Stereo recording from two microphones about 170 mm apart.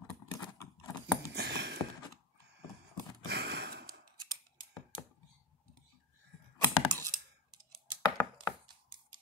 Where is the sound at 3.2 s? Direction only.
80° right.